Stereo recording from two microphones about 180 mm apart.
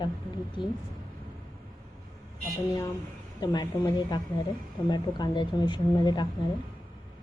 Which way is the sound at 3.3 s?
25° left (ahead or behind).